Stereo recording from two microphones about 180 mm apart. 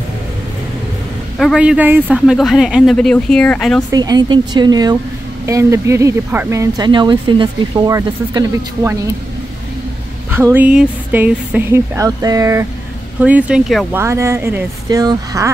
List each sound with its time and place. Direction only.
1.4 s speech: 5° right (ahead or behind)
3.9 s a woman's voice: 20° right (ahead or behind)
10.3 s speech: 10° right (ahead or behind)
13.2 s speech: 5° right (ahead or behind)
13.9 s speech: 15° right (ahead or behind)